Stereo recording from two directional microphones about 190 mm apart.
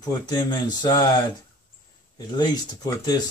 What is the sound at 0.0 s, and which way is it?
Speech, 20° left (ahead or behind).